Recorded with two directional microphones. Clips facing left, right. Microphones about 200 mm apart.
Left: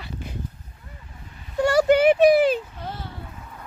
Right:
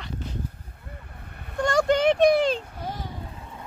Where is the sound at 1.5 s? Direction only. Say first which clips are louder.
Left 4 dB; 10° left (ahead or behind).